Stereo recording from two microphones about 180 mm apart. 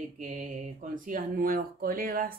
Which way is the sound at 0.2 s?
45° right (ahead or behind).